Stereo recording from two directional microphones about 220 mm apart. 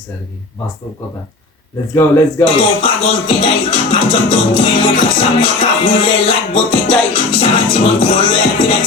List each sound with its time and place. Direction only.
2.4 s music: 25° left (ahead or behind)